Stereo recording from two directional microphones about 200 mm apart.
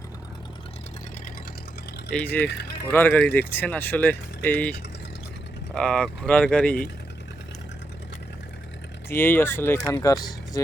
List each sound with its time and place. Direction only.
2.1 s speech: 10° left (ahead or behind)
2.4 s speech: 55° left (ahead or behind)
2.9 s speech: 10° left (ahead or behind)
9.0 s speech: 10° left (ahead or behind)